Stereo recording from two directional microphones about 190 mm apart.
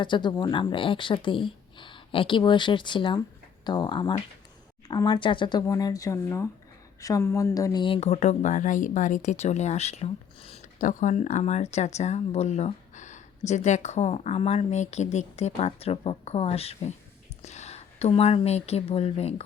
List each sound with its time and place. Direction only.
0.0 s speech: 25° left (ahead or behind)